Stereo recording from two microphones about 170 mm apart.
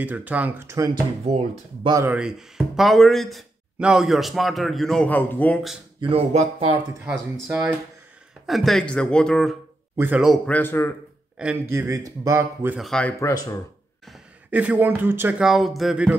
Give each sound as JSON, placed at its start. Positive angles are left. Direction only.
{"t": 0.0, "sound": "speech", "side_deg": -10}
{"t": 2.0, "sound": "speech", "side_deg": -5}
{"t": 5.9, "sound": "speech", "side_deg": -35}
{"t": 7.4, "sound": "speech", "side_deg": -15}
{"t": 8.5, "sound": "speech", "side_deg": 0}
{"t": 9.9, "sound": "speech", "side_deg": -10}
{"t": 11.3, "sound": "speech", "side_deg": -10}
{"t": 12.7, "sound": "speech", "side_deg": 0}
{"t": 13.2, "sound": "speech", "side_deg": 20}
{"t": 14.0, "sound": "speech", "side_deg": -5}